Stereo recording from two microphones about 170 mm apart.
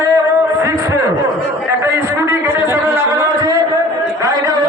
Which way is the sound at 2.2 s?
15° right (ahead or behind).